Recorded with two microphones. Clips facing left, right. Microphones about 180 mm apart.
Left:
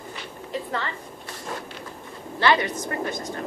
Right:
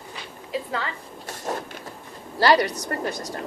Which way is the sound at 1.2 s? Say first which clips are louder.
Right 5 dB; 45° right (ahead or behind).